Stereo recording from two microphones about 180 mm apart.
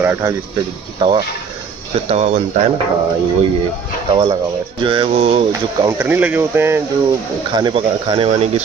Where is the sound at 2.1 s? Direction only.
40° right (ahead or behind).